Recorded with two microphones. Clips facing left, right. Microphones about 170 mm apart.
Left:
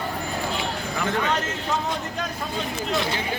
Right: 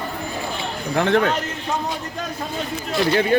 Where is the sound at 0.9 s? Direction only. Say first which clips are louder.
Right 9 dB; 80° right.